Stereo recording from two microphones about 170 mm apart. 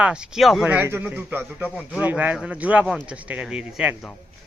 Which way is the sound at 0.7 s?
15° right (ahead or behind).